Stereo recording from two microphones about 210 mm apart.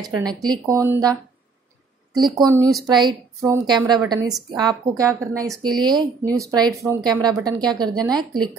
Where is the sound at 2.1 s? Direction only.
20° right (ahead or behind).